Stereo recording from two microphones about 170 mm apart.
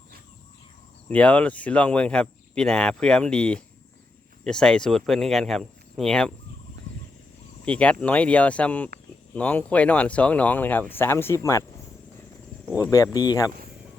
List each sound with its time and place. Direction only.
1.0 s speech: 5° left (ahead or behind)
7.6 s speech: 5° left (ahead or behind)
12.9 s speech: 20° left (ahead or behind)